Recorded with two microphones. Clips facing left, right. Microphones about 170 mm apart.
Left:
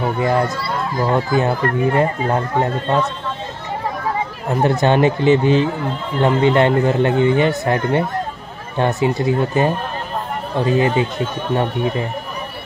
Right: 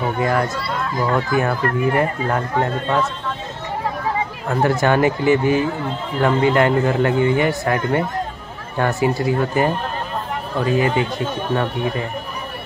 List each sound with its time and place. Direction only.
0.2 s speech: 25° left (ahead or behind)
4.6 s speech: 20° left (ahead or behind)